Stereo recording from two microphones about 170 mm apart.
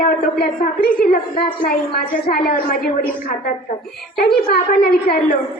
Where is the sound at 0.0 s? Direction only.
60° left (ahead or behind).